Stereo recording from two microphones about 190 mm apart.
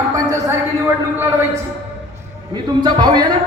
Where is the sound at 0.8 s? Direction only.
10° right (ahead or behind).